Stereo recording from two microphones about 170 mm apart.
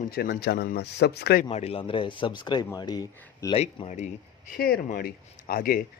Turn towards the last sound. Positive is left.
turn(degrees=55)  # may be behind; listen again after turning